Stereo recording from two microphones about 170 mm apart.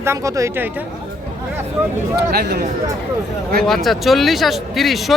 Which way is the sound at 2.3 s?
70° right (ahead or behind).